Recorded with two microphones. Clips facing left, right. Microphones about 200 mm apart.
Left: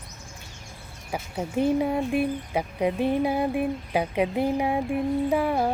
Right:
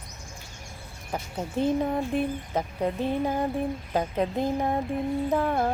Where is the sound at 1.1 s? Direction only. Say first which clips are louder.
Left 2 dB; 10° left (ahead or behind).